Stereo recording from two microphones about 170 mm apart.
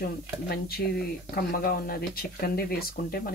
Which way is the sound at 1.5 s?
60° left (ahead or behind).